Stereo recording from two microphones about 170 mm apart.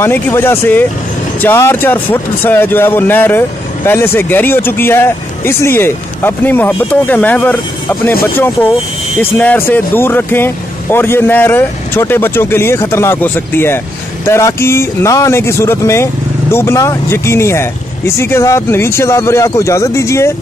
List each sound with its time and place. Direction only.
0.0 s speech: 15° left (ahead or behind)